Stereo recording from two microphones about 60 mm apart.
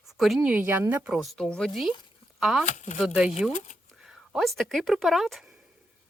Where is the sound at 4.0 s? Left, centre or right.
Centre.